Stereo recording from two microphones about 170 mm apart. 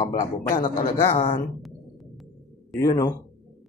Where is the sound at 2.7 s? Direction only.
20° left (ahead or behind).